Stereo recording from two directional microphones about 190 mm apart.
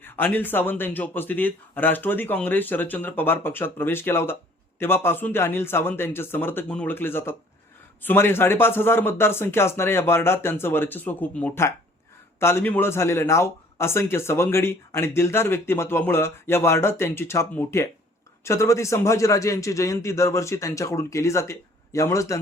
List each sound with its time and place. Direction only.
0.0 s a man's voice: 10° left (ahead or behind)